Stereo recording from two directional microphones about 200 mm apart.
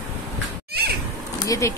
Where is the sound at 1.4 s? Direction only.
15° left (ahead or behind).